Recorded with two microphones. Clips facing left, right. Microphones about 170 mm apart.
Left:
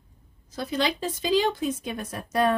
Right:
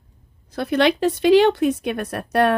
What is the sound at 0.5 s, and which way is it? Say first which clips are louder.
Speech: right 8 dB; 65° right (ahead or behind).